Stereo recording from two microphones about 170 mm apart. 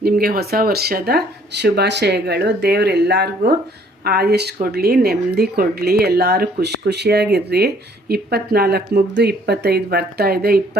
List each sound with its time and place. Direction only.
0.0 s speech: 65° right (ahead or behind)
4.0 s speech: 70° right (ahead or behind)